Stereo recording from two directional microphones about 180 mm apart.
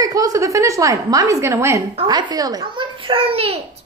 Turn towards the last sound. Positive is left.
turn(degrees=-30)  # may be behind; listen again after turning